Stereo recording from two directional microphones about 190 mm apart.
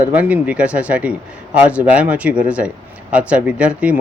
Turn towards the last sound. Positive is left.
turn(degrees=-5)  # may be behind; listen again after turning